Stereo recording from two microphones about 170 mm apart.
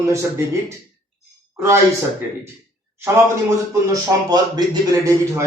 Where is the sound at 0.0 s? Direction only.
15° right (ahead or behind).